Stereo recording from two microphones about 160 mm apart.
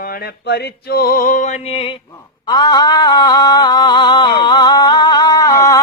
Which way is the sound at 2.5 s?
25° left (ahead or behind).